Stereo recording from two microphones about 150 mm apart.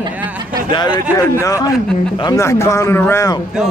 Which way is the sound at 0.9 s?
20° left (ahead or behind).